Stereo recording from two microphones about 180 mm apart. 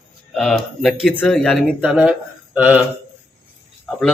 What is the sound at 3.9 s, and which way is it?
Speech, centre (ahead or behind).